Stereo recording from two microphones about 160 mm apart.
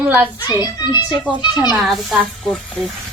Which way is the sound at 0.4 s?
25° left (ahead or behind).